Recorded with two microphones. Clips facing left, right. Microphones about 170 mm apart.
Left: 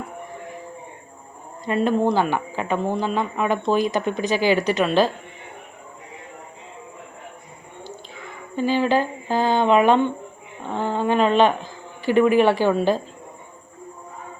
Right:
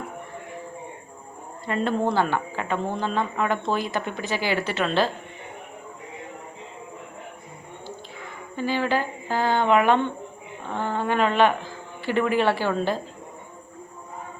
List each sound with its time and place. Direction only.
1.6 s speech: 15° left (ahead or behind)
8.5 s a sound: 20° left (ahead or behind)
10.8 s speech: 15° left (ahead or behind)